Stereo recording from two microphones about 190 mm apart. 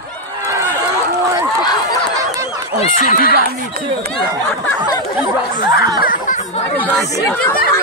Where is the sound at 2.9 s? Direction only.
45° left (ahead or behind).